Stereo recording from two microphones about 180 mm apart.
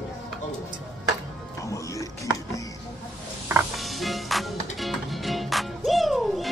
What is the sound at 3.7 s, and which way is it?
Music, centre (ahead or behind).